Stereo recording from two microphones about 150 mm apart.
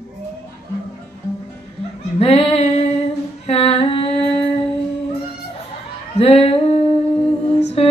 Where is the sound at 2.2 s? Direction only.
40° left (ahead or behind).